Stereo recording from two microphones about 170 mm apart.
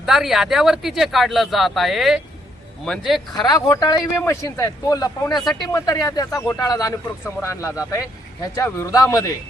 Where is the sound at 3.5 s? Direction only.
20° left (ahead or behind).